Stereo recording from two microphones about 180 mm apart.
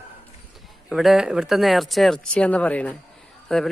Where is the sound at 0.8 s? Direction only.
Centre (ahead or behind).